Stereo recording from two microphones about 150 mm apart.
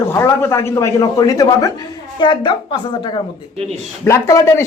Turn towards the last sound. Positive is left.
turn(degrees=20)  # may be behind; listen again after turning